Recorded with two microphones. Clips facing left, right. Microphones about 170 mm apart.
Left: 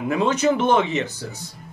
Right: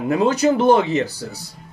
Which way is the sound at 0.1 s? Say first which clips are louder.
Right 3 dB; 35° right (ahead or behind).